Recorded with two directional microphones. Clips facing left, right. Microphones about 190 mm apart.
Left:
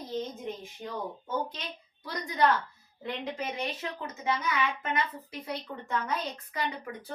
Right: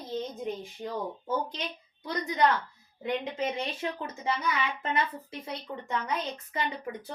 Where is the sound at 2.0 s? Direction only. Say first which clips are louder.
Right 1 dB; 20° right (ahead or behind).